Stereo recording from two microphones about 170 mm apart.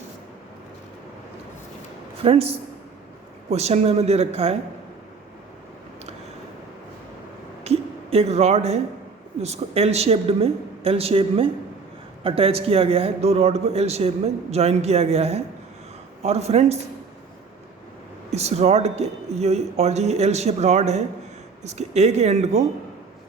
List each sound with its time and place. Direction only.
2.2 s speech: 35° right (ahead or behind)
7.6 s a sound: 40° right (ahead or behind)
9.4 s speech: 40° right (ahead or behind)
18.3 s speech: 40° right (ahead or behind)